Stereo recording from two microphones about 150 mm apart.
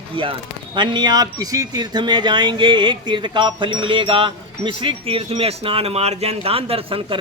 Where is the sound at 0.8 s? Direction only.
30° right (ahead or behind).